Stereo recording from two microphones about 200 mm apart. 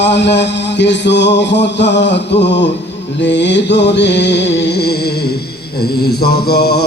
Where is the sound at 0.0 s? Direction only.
60° left (ahead or behind).